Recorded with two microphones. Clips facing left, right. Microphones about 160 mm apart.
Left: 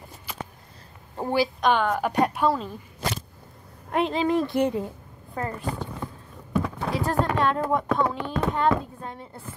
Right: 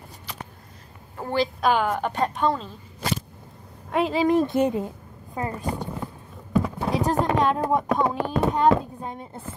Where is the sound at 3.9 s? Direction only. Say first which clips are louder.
Right 2 dB; 5° right (ahead or behind).